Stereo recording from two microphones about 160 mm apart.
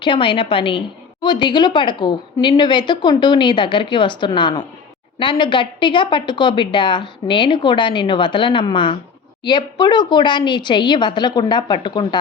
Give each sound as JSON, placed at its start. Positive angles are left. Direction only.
{"t": 0.0, "sound": "a woman's voice", "side_deg": 30}